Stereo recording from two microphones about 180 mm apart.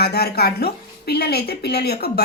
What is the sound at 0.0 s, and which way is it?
Speech, 60° left (ahead or behind).